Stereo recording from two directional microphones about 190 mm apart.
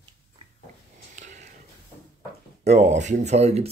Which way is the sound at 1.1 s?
40° right (ahead or behind).